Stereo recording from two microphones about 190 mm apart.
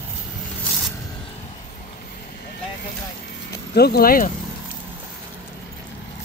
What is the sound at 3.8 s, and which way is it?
Speech, 55° left (ahead or behind).